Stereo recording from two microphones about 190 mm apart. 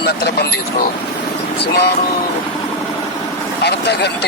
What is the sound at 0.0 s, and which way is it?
A man's voice, 55° left (ahead or behind).